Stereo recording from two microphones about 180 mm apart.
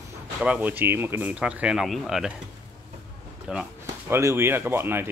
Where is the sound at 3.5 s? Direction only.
10° right (ahead or behind).